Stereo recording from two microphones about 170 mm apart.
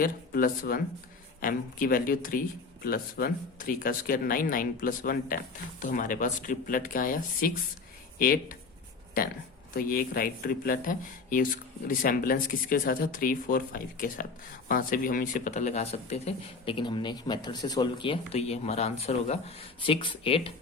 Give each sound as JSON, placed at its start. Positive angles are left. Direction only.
{"t": 0.0, "sound": "speech", "side_deg": 55}
{"t": 9.7, "sound": "speech", "side_deg": 60}